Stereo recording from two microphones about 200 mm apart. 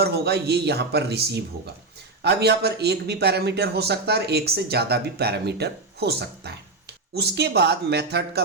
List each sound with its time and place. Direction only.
0.0 s a man's voice: 55° right (ahead or behind)